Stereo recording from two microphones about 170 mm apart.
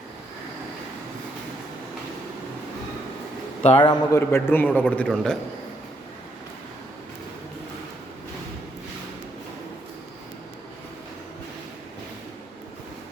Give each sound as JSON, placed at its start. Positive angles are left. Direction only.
{"t": 3.8, "sound": "a man's voice", "side_deg": 25}
{"t": 4.3, "sound": "a man's voice", "side_deg": 15}